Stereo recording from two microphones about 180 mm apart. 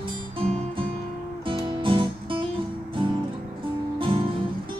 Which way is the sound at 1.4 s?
25° right (ahead or behind).